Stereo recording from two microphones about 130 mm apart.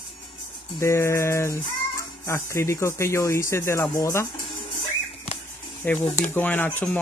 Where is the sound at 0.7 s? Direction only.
20° left (ahead or behind).